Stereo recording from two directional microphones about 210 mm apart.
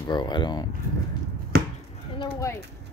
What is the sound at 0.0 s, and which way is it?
Speech, 20° left (ahead or behind).